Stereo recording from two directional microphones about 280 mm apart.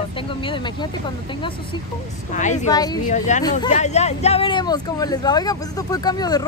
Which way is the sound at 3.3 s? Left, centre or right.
Left.